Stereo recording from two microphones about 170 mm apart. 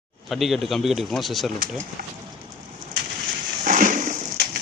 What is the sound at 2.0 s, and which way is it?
Speech, 60° right (ahead or behind).